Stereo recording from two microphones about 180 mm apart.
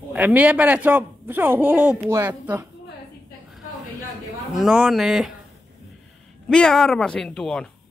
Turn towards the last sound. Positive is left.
turn(degrees=5)  # may be behind; listen again after turning